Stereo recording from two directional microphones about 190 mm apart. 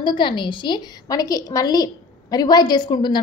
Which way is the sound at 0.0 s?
25° left (ahead or behind).